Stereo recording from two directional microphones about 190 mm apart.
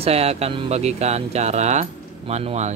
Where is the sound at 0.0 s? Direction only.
35° right (ahead or behind).